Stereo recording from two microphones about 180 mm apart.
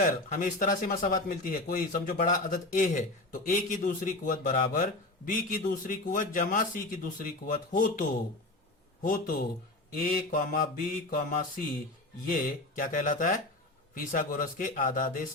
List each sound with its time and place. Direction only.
0.0 s speech: 50° left (ahead or behind)
9.0 s speech: 50° left (ahead or behind)